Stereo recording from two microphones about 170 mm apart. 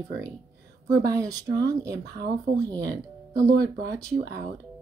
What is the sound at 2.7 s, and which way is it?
Speech, 20° right (ahead or behind).